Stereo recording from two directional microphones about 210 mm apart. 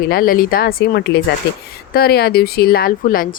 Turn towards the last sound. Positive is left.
turn(degrees=45)  # may be behind; listen again after turning